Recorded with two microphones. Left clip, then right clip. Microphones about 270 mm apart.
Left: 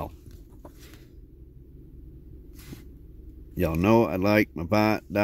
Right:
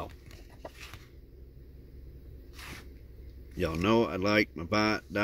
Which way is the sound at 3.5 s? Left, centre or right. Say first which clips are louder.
Left 5 dB; centre.